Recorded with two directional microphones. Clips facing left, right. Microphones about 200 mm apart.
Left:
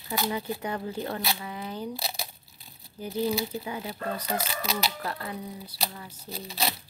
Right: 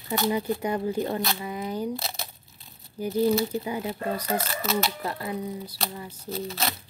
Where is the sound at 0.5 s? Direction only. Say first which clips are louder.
Right 6 dB; 15° right (ahead or behind).